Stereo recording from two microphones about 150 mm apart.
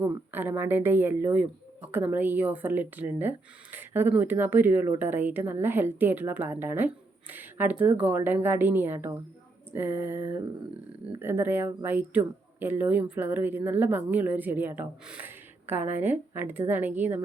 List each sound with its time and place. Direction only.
0.0 s speech: 15° right (ahead or behind)